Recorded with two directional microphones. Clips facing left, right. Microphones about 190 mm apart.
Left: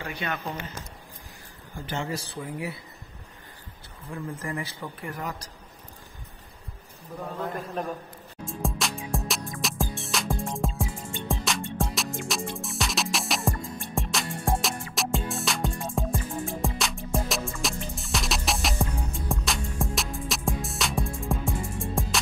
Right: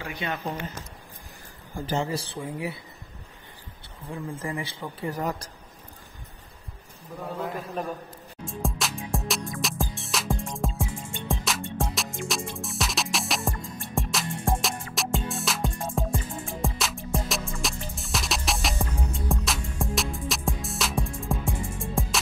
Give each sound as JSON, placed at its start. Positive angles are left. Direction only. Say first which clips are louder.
{"t": 1.9, "sound": "speech", "louder": "right 4 dB", "side_deg": -35}
{"t": 4.1, "sound": "speech", "louder": "right 1 dB", "side_deg": -15}
{"t": 4.5, "sound": "speech", "louder": "right 1 dB", "side_deg": -25}
{"t": 5.1, "sound": "speech", "louder": "right 5 dB", "side_deg": -40}
{"t": 7.2, "sound": "a man's voice", "louder": "even", "side_deg": 0}
{"t": 8.5, "sound": "music", "louder": "even", "side_deg": 0}